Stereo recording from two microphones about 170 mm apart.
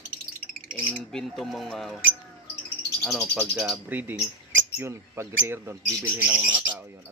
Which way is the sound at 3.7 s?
10° right (ahead or behind).